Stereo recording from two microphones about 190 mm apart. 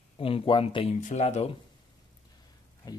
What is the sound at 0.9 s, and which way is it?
Speech, 40° left (ahead or behind).